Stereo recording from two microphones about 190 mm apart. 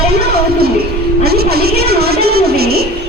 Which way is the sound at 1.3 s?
55° right (ahead or behind).